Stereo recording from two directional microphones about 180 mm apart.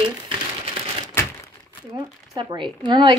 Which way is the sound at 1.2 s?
15° left (ahead or behind).